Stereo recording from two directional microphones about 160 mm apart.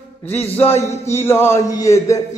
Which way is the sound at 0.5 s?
15° left (ahead or behind).